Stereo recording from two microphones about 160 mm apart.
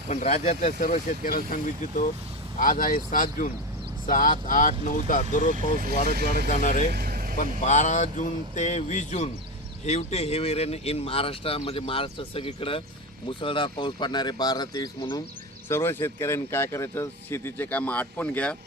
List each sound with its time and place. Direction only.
0.1 s speech: 45° left (ahead or behind)
5.7 s speech: 65° right (ahead or behind)
6.5 s speech: 50° left (ahead or behind)
6.9 s vehicle: 70° right (ahead or behind)
7.6 s speech: 50° left (ahead or behind); by 15.2 s 25° left (ahead or behind)
15.7 s speech: 15° left (ahead or behind)